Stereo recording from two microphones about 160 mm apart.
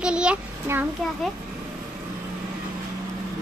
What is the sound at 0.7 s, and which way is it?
Speech, 15° right (ahead or behind).